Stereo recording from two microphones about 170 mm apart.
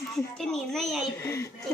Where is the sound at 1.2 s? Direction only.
20° left (ahead or behind).